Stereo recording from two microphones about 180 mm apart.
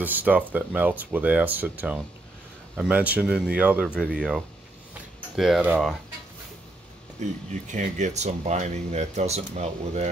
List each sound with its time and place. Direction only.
0.0 s speech: 10° right (ahead or behind)
7.2 s speech: 40° right (ahead or behind)